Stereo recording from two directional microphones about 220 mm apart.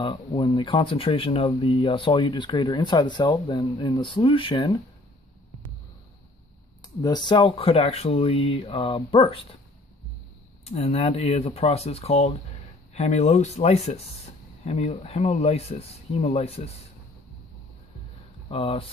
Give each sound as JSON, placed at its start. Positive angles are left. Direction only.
{"t": 0.0, "sound": "speech", "side_deg": 20}
{"t": 7.0, "sound": "speech", "side_deg": 20}
{"t": 10.6, "sound": "speech", "side_deg": 25}
{"t": 18.5, "sound": "speech", "side_deg": 25}